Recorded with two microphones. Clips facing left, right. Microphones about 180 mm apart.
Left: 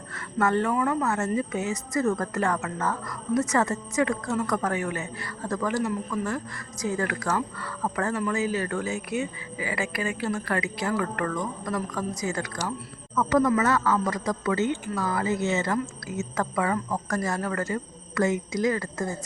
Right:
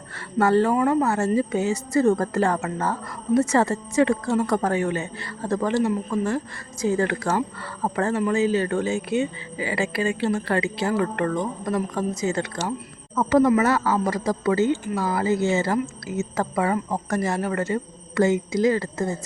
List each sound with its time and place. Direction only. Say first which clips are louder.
0.3 s a woman's voice: right 5 dB; 35° right (ahead or behind)